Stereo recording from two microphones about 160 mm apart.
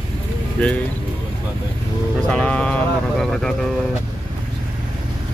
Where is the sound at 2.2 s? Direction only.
5° left (ahead or behind).